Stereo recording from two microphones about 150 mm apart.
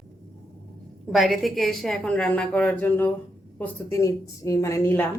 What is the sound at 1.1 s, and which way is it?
A woman's voice, centre (ahead or behind).